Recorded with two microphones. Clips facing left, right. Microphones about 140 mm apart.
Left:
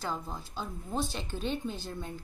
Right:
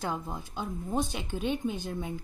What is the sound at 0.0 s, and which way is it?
A woman's voice, 20° right (ahead or behind).